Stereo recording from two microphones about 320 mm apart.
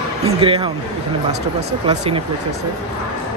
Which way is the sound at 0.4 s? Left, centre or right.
Centre.